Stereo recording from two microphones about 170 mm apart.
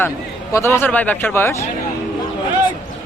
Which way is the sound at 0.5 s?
15° left (ahead or behind).